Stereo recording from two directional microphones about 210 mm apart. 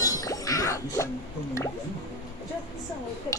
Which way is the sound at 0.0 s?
15° left (ahead or behind).